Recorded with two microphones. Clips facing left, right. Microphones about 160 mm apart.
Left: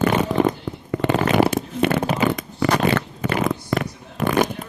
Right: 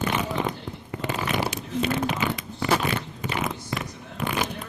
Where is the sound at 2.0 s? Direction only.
35° left (ahead or behind).